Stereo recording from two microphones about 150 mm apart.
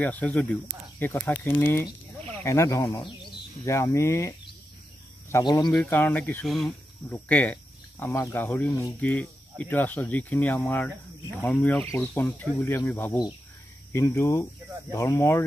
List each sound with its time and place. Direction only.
0.0 s speech: 10° left (ahead or behind)
5.4 s speech: 30° left (ahead or behind)
5.7 s speech: 10° left (ahead or behind)
6.4 s speech: centre (ahead or behind); by 15.4 s 20° left (ahead or behind)